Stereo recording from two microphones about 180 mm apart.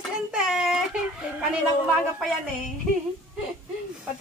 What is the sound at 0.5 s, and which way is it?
Speech, 5° right (ahead or behind).